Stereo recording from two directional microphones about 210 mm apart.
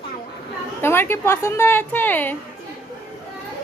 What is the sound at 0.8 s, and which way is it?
A woman's voice, 10° left (ahead or behind).